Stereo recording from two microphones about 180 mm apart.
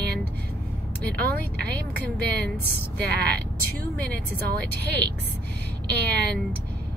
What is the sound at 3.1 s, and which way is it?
Speech, 65° right (ahead or behind).